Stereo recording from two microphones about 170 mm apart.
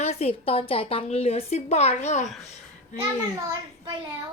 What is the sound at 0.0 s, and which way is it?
A woman's voice, 40° left (ahead or behind).